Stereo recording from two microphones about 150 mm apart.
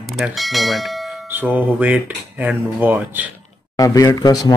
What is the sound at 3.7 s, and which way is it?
Speech, 25° left (ahead or behind).